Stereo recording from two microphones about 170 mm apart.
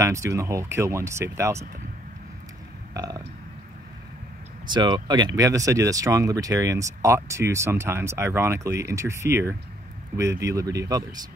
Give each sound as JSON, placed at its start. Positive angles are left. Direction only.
{"t": 0.0, "sound": "speech", "side_deg": -20}
{"t": 2.9, "sound": "burping", "side_deg": -20}
{"t": 4.6, "sound": "speech", "side_deg": -25}